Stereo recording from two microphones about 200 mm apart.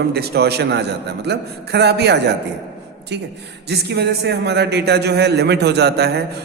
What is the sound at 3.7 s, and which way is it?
A man's voice, 55° right (ahead or behind).